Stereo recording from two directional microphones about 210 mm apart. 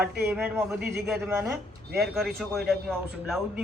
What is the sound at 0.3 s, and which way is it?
A man's voice, 10° right (ahead or behind).